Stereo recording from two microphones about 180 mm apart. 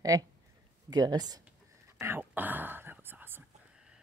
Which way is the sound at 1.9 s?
15° right (ahead or behind).